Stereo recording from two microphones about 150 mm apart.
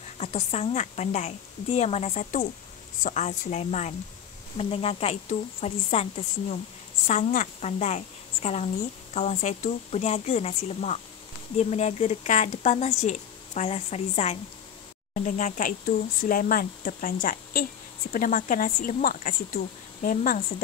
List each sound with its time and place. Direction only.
0.2 s speech: 45° left (ahead or behind)
15.1 s speech: 60° left (ahead or behind)
16.2 s a woman's voice: 70° left (ahead or behind)